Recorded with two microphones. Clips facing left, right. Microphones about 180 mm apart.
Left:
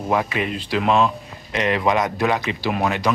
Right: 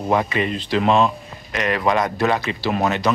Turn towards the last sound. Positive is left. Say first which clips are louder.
# right 1 dB
turn(degrees=10)  # may be behind; listen again after turning